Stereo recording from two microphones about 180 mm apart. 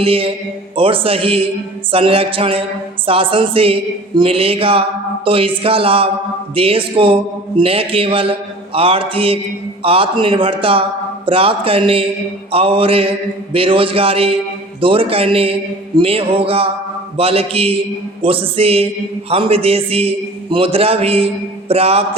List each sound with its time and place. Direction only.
0.0 s a man's voice: 30° right (ahead or behind)